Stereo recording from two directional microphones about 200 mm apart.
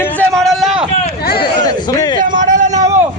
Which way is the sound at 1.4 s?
20° left (ahead or behind).